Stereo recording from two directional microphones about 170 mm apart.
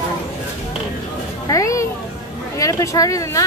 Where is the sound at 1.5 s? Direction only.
20° left (ahead or behind).